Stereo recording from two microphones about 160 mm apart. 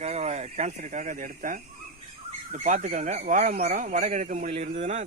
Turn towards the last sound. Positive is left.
turn(degrees=-45)  # may be behind; listen again after turning